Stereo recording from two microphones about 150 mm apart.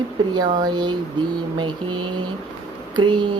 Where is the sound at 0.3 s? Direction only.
30° right (ahead or behind).